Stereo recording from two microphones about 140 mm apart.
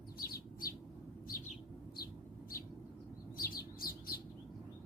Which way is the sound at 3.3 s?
90° left.